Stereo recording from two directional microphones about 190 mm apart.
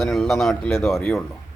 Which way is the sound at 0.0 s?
Centre (ahead or behind).